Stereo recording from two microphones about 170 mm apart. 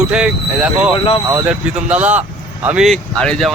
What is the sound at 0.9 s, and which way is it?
Speech, 35° left (ahead or behind).